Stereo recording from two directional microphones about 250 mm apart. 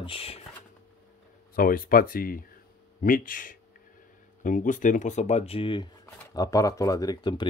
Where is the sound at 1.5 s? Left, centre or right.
Left.